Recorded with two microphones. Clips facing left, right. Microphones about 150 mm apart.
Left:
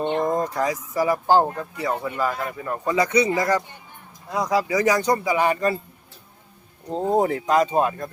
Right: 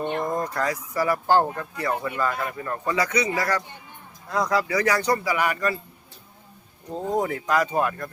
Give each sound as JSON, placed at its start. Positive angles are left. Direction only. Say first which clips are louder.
{"t": 0.0, "sound": "speech", "louder": "left 4 dB", "side_deg": 20}
{"t": 6.9, "sound": "speech", "louder": "left 5 dB", "side_deg": 30}